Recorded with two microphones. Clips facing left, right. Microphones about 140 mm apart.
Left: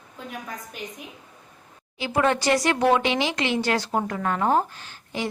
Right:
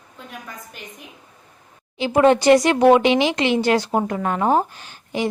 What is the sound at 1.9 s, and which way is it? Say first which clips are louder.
Speech: right 7 dB; 20° right (ahead or behind).